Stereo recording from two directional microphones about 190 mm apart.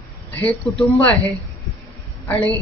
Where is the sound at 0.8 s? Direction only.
5° left (ahead or behind).